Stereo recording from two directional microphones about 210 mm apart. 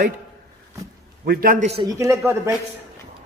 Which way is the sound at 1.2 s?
45° right (ahead or behind).